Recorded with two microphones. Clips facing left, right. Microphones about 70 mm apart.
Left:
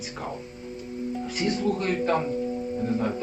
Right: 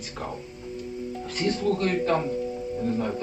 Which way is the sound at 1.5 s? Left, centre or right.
Centre.